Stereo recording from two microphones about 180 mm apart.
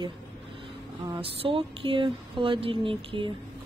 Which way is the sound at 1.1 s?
30° right (ahead or behind).